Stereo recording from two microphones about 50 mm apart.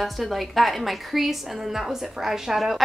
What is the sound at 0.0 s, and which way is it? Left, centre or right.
A woman's voice, centre.